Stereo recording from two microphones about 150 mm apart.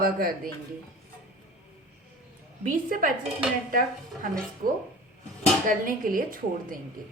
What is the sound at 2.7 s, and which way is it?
A woman's voice, 65° right (ahead or behind).